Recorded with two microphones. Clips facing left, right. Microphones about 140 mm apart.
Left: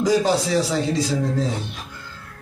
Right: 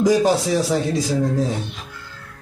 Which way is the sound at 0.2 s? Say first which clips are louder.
Right 2 dB; 20° right (ahead or behind).